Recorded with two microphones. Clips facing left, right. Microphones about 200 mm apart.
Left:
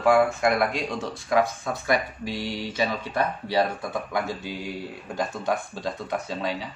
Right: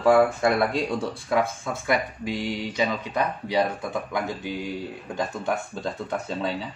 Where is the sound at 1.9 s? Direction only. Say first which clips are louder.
Right 1 dB; 20° right (ahead or behind).